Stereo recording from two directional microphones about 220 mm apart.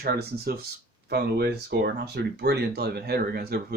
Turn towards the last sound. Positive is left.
turn(degrees=-45)  # may be behind; listen again after turning